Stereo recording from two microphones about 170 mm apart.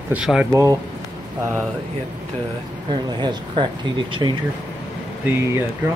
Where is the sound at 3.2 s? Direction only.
30° right (ahead or behind).